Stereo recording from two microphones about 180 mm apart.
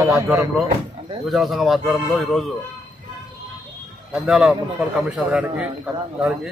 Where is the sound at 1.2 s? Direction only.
Centre (ahead or behind).